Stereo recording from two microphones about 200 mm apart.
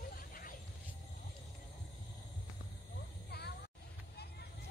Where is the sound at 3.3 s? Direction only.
55° left (ahead or behind).